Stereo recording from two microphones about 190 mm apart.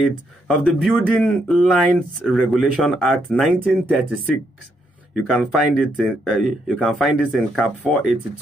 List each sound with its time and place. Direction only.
0.0 s speech: centre (ahead or behind)
5.1 s speech: centre (ahead or behind)